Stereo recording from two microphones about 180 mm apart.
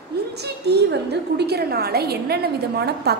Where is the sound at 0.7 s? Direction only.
65° right (ahead or behind).